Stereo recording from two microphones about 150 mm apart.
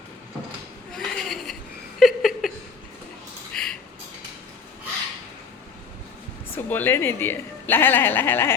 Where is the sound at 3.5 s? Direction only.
5° left (ahead or behind).